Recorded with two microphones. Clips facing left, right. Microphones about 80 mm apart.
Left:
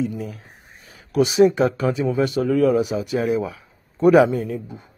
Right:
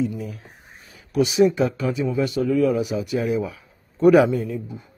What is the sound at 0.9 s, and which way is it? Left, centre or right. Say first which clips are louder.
Speech: left 2 dB; left.